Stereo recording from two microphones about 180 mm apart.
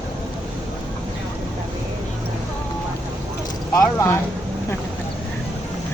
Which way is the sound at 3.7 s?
15° left (ahead or behind).